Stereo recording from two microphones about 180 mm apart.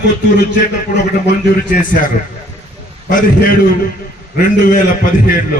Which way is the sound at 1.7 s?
50° left (ahead or behind).